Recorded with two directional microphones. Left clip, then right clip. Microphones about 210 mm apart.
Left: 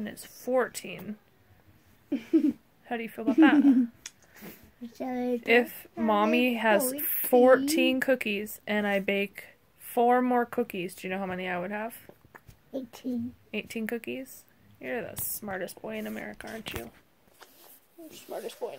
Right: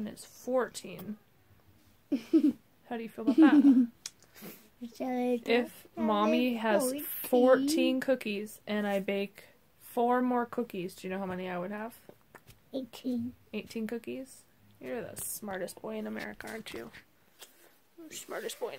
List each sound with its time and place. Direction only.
0.0 s speech: centre (ahead or behind)
18.0 s speech: 20° right (ahead or behind)